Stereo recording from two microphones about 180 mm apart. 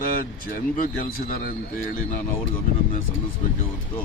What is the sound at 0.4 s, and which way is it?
Speech, 50° left (ahead or behind).